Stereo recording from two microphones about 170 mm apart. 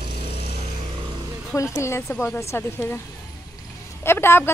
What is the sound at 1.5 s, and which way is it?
Speech, 15° left (ahead or behind).